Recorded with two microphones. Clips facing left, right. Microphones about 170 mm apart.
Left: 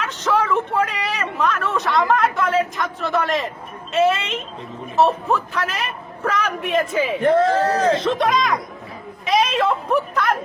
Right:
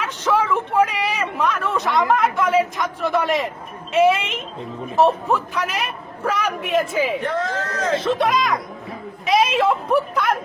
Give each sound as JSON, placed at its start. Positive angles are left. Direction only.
{"t": 0.0, "sound": "a sound", "side_deg": -10}
{"t": 3.9, "sound": "a man's voice", "side_deg": -15}
{"t": 7.3, "sound": "speech", "side_deg": 30}
{"t": 7.9, "sound": "a man's voice", "side_deg": -5}